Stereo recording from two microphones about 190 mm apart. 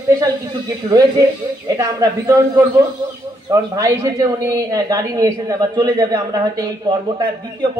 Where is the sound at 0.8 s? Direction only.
20° right (ahead or behind).